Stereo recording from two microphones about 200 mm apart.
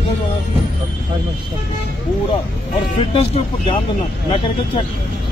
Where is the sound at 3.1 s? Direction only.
30° left (ahead or behind).